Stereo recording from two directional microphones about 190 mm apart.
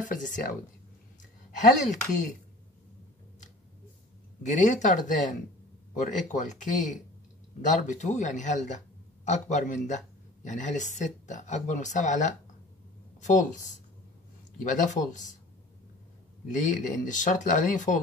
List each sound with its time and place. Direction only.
0.0 s a woman's voice: 45° left (ahead or behind)
1.6 s speech: 40° left (ahead or behind)
4.4 s speech: 40° left (ahead or behind)
16.5 s speech: 40° left (ahead or behind)